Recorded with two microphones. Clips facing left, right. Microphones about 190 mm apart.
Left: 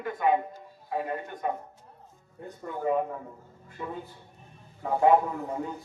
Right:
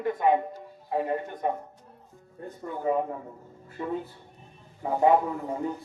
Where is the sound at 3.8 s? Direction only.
15° right (ahead or behind).